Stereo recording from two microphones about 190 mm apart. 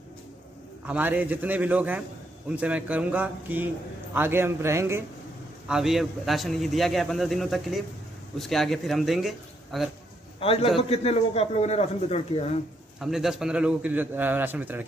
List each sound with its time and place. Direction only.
0.8 s a man's voice: 10° right (ahead or behind)
5.7 s a man's voice: centre (ahead or behind)
10.4 s a man's voice: 30° left (ahead or behind)
13.0 s a man's voice: centre (ahead or behind)